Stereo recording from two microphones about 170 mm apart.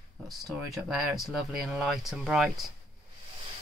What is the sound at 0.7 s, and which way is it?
Speech, centre (ahead or behind).